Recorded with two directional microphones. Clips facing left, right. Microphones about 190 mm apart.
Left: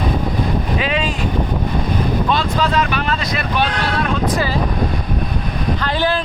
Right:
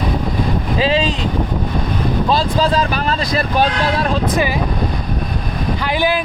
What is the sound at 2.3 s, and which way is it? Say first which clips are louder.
Speech: right 4 dB; 35° right (ahead or behind).